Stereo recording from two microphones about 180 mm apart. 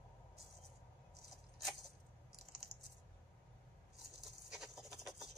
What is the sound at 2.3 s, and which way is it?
Computer keyboard, 65° right (ahead or behind).